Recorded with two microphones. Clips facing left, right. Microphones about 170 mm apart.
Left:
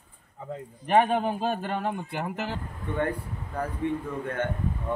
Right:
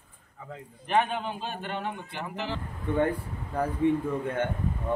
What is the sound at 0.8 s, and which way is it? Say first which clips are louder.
Speech: left 5 dB; 45° left (ahead or behind).